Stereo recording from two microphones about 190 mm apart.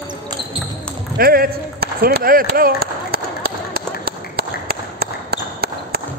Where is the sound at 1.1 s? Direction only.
50° right (ahead or behind).